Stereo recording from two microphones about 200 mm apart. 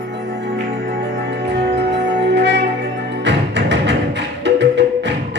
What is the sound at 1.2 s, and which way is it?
Music, 60° right (ahead or behind).